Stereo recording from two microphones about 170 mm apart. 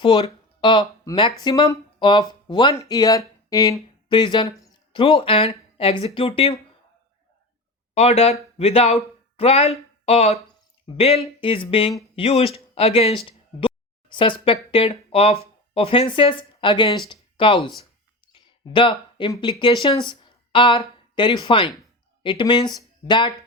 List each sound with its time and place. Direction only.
0.0 s speech: 30° left (ahead or behind)
7.9 s speech: 35° left (ahead or behind)
17.1 s a sound: 30° left (ahead or behind)
18.3 s speech: 30° left (ahead or behind)